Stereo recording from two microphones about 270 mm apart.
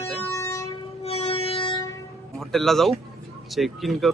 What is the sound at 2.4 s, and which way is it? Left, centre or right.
Speech, centre.